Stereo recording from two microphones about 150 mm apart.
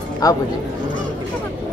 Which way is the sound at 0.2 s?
20° left (ahead or behind).